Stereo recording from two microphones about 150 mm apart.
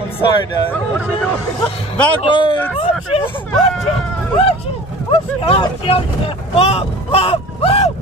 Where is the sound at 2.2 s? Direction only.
35° left (ahead or behind).